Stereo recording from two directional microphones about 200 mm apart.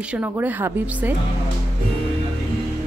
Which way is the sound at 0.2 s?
10° right (ahead or behind).